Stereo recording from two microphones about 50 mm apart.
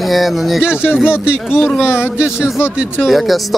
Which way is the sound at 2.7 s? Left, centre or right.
Right.